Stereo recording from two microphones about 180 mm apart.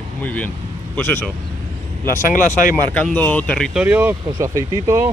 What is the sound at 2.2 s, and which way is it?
Speech, 50° left (ahead or behind).